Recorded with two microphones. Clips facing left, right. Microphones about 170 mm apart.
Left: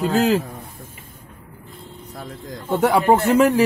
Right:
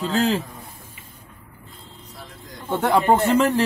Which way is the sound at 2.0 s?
55° left (ahead or behind).